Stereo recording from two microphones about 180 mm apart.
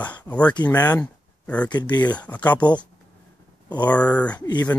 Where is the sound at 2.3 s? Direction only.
10° left (ahead or behind).